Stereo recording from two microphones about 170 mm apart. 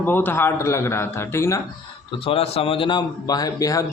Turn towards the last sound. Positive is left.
turn(degrees=20)  # may be behind; listen again after turning